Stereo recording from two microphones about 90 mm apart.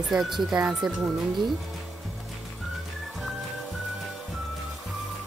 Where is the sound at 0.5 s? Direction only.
15° right (ahead or behind).